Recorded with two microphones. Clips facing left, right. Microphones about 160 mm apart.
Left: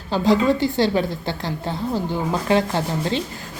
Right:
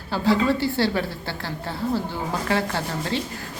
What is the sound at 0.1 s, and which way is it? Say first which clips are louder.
A woman's voice: left 3 dB; 20° left (ahead or behind).